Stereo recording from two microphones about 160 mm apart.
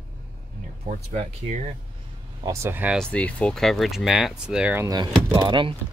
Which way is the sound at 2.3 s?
20° right (ahead or behind).